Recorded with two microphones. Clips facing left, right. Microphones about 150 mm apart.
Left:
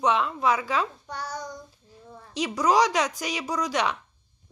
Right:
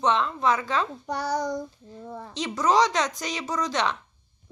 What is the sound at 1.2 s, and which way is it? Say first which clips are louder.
Child singing: right 9 dB; 85° right.